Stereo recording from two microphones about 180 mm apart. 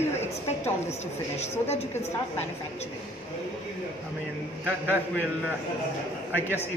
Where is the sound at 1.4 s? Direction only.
35° left (ahead or behind).